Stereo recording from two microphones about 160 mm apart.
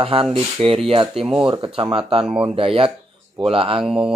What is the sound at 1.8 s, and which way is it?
Speech, 35° right (ahead or behind).